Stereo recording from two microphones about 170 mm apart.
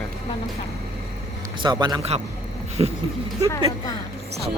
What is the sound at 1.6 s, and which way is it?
Speech, 25° right (ahead or behind).